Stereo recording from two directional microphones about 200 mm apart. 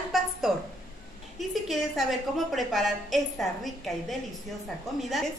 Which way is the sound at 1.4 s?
Centre (ahead or behind).